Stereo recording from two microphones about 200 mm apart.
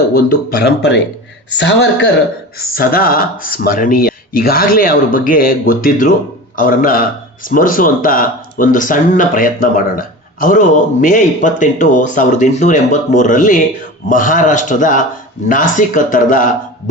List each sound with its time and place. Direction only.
0.1 s a woman's voice: 50° left (ahead or behind)
2.6 s speech: 45° left (ahead or behind)